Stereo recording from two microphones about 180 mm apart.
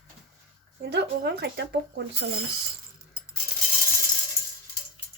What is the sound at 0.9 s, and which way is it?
Speech, 70° right (ahead or behind).